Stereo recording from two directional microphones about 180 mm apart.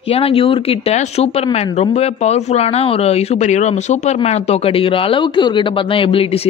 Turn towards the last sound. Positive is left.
turn(degrees=35)  # may be behind; listen again after turning